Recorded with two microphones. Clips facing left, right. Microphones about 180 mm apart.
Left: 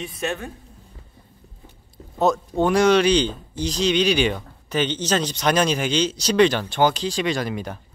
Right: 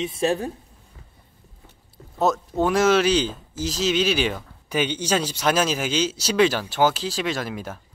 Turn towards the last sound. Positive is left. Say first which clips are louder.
# left 3 dB
turn(degrees=0)  # may be behind; listen again after turning